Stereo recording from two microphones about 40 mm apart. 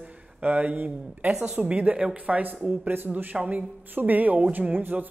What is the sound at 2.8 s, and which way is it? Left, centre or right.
Speech, right.